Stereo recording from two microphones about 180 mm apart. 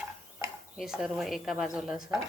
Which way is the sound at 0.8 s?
Centre (ahead or behind).